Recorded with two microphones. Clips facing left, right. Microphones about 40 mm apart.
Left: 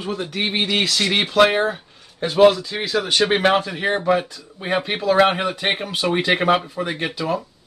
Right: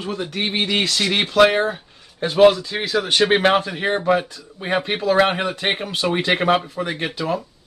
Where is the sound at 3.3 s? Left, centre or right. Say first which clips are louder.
Right 1 dB; centre.